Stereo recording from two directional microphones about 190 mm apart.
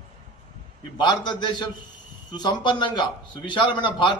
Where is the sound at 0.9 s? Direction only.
25° left (ahead or behind).